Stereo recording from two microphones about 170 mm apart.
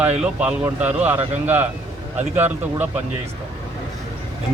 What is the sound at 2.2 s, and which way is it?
Speech, 40° right (ahead or behind).